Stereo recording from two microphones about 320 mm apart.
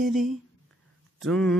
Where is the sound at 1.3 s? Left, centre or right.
Centre.